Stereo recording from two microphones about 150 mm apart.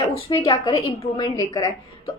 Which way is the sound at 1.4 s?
25° left (ahead or behind).